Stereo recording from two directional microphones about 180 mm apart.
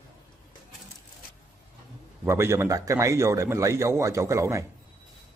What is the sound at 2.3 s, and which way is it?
A man's voice, 15° right (ahead or behind).